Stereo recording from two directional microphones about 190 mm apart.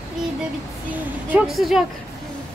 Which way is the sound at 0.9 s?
5° right (ahead or behind).